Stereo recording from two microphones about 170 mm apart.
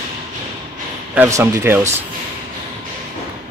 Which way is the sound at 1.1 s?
15° right (ahead or behind).